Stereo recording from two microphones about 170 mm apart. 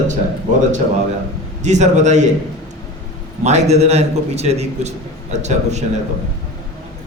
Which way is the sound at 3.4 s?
40° right (ahead or behind).